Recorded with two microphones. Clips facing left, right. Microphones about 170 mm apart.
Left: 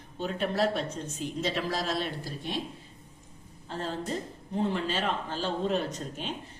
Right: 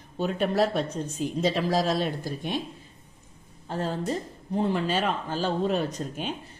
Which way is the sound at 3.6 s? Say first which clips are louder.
Right 5 dB; 45° right (ahead or behind).